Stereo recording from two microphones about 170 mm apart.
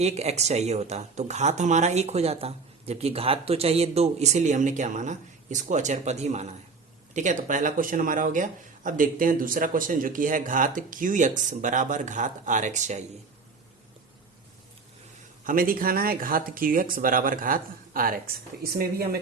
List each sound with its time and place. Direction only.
0.0 s speech: 40° right (ahead or behind)
15.4 s speech: 55° right (ahead or behind)